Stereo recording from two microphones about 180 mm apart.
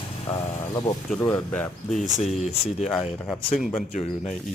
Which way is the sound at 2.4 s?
40° left (ahead or behind).